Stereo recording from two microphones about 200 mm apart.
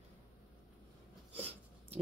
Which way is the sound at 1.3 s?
30° right (ahead or behind).